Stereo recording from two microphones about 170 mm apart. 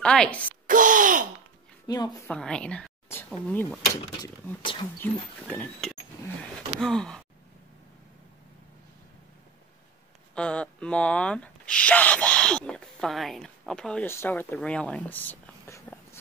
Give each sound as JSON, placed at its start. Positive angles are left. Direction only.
{"t": 0.0, "sound": "speech", "side_deg": 5}
{"t": 0.7, "sound": "gasp", "side_deg": -50}
{"t": 1.9, "sound": "a woman's voice", "side_deg": 25}
{"t": 2.2, "sound": "a woman's voice", "side_deg": 5}
{"t": 4.9, "sound": "speech", "side_deg": 10}
{"t": 10.3, "sound": "speech", "side_deg": 5}